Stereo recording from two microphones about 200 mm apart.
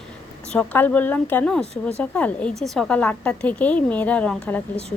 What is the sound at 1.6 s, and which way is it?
Speech, 30° left (ahead or behind).